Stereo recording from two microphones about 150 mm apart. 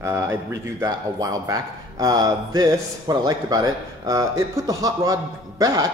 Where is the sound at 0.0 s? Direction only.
20° right (ahead or behind).